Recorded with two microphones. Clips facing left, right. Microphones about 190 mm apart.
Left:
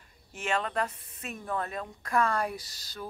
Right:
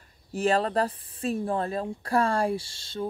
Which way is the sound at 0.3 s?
35° right (ahead or behind).